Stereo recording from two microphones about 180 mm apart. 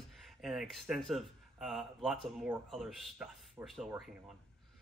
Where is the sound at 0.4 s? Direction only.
Centre (ahead or behind).